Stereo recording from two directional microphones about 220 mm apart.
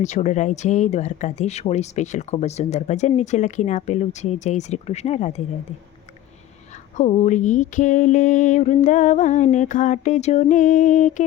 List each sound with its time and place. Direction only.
0.0 s speech: 30° left (ahead or behind)
6.9 s speech: 30° left (ahead or behind)